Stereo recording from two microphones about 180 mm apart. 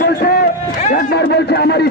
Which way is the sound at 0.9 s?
65° left (ahead or behind).